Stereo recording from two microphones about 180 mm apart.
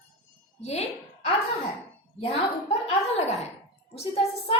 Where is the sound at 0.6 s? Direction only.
35° left (ahead or behind).